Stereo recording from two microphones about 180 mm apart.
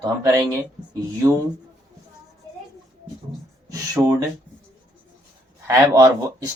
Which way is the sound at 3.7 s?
15° right (ahead or behind).